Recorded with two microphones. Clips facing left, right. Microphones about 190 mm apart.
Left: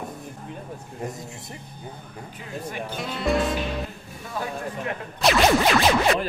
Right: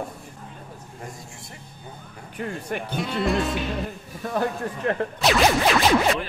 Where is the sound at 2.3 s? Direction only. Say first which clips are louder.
Right 4 dB; 65° right (ahead or behind).